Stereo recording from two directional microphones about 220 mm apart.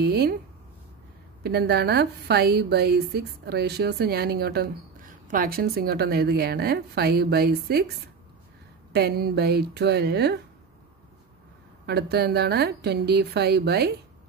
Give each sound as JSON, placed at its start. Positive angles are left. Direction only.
{"t": 0.0, "sound": "speech", "side_deg": -45}
{"t": 1.4, "sound": "a woman's voice", "side_deg": -45}
{"t": 8.9, "sound": "a woman's voice", "side_deg": -45}
{"t": 11.8, "sound": "a woman's voice", "side_deg": -45}